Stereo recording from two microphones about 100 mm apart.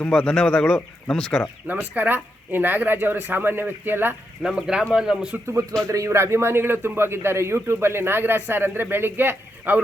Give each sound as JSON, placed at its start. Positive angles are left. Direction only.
{"t": 0.0, "sound": "speech", "side_deg": 10}
{"t": 1.6, "sound": "a man's voice", "side_deg": -15}
{"t": 4.4, "sound": "speech", "side_deg": -5}
{"t": 5.9, "sound": "a man's voice", "side_deg": -30}